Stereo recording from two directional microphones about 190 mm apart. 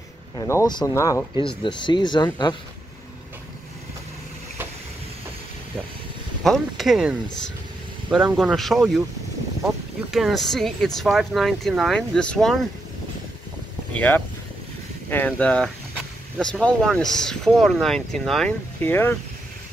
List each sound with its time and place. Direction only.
0.4 s speech: 20° left (ahead or behind)
6.4 s speech: centre (ahead or behind)
10.1 s speech: centre (ahead or behind)
13.9 s speech: 10° left (ahead or behind)